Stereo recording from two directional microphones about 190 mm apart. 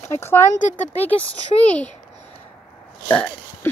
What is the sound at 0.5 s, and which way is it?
Speech, 40° left (ahead or behind).